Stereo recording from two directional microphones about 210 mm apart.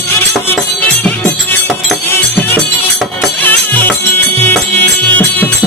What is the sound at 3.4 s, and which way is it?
Music, 10° left (ahead or behind).